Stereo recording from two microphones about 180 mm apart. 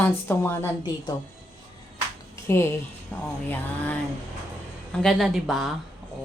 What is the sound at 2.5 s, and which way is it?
Speech, 15° left (ahead or behind).